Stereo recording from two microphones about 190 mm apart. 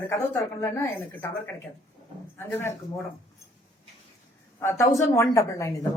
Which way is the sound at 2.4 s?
15° left (ahead or behind).